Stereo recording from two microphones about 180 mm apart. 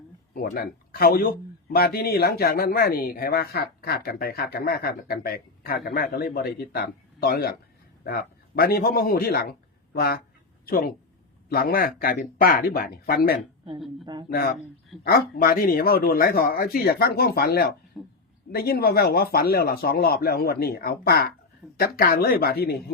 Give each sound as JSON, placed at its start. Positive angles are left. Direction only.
{"t": 0.3, "sound": "a man's voice", "side_deg": 55}
{"t": 14.0, "sound": "speech", "side_deg": -25}
{"t": 14.3, "sound": "speech", "side_deg": 60}
{"t": 18.0, "sound": "a man's voice", "side_deg": 0}
{"t": 18.5, "sound": "speech", "side_deg": 55}